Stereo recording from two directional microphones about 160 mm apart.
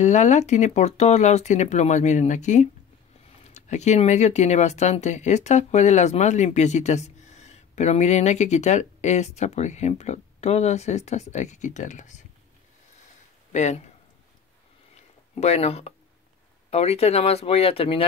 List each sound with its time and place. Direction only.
0.0 s speech: 45° left (ahead or behind)
13.5 s speech: 45° left (ahead or behind)
15.3 s speech: 40° left (ahead or behind)